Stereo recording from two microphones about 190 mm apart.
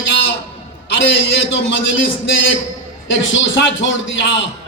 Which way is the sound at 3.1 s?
80° left.